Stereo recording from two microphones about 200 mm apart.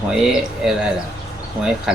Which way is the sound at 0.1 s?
5° right (ahead or behind).